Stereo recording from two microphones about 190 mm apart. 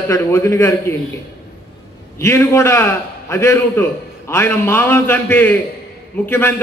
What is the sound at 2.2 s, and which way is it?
A man's voice, 15° left (ahead or behind).